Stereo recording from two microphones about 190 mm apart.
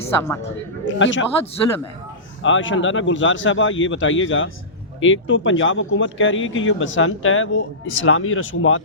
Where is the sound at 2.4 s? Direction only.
90° left.